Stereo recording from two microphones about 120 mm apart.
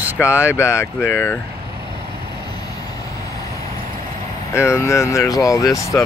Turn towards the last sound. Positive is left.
turn(degrees=30)  # may be behind; listen again after turning